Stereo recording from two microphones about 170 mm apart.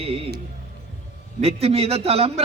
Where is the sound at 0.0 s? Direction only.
35° right (ahead or behind).